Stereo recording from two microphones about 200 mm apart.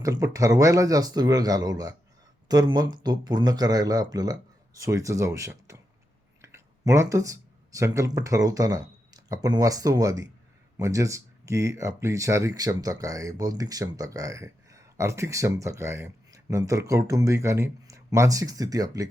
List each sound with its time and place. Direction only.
0.0 s speech: 15° right (ahead or behind)